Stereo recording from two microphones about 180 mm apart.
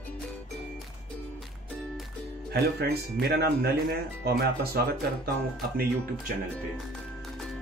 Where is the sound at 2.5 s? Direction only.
60° right (ahead or behind).